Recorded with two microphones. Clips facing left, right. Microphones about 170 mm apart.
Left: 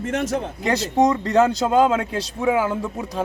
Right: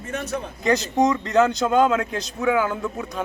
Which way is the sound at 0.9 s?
30° left (ahead or behind).